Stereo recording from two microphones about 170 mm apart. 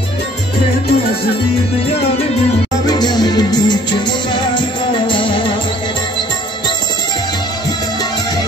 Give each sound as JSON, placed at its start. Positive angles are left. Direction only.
{"t": 2.9, "sound": "music", "side_deg": 25}
{"t": 5.0, "sound": "music", "side_deg": 30}